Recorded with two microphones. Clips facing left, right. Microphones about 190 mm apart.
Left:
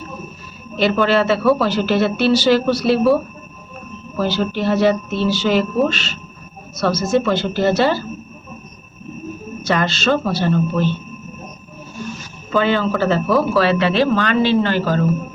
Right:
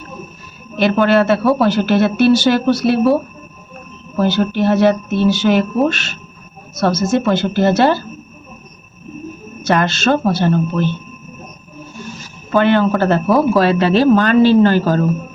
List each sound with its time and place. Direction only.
0.8 s speech: 55° right (ahead or behind)
4.2 s speech: 55° right (ahead or behind)
7.2 s speech: 50° right (ahead or behind)
9.7 s speech: 50° right (ahead or behind)
12.5 s speech: 55° right (ahead or behind)